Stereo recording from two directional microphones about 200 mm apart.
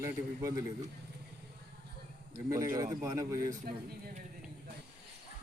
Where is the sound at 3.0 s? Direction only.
15° right (ahead or behind).